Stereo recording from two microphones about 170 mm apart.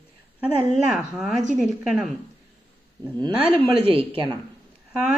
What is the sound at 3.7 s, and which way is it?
Speech, 35° right (ahead or behind).